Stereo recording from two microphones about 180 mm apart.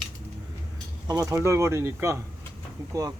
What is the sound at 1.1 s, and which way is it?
Speech, 20° right (ahead or behind).